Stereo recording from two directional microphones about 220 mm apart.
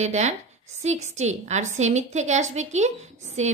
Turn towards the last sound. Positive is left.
turn(degrees=-30)  # may be behind; listen again after turning